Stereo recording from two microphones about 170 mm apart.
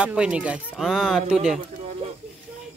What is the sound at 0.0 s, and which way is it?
Speech, 5° right (ahead or behind).